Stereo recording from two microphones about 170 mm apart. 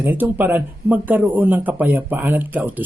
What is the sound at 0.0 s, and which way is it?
Speech, 10° right (ahead or behind).